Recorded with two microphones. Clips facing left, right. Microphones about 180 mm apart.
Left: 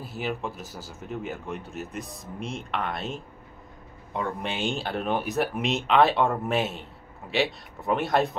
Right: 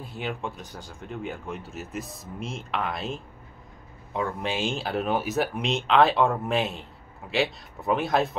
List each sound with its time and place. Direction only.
0.0 s speech: 5° left (ahead or behind)